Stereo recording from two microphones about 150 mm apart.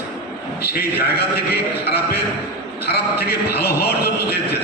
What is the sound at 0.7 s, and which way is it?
A man's voice, 90° left.